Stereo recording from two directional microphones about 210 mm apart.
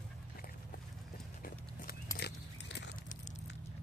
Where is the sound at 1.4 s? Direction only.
40° left (ahead or behind).